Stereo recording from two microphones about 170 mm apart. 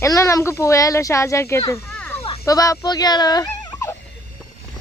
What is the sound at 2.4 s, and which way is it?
Turkey, 20° left (ahead or behind).